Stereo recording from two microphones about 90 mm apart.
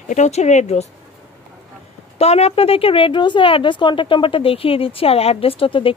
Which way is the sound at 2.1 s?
90° left.